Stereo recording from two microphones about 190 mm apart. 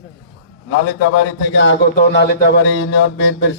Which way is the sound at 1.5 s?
75° left (ahead or behind).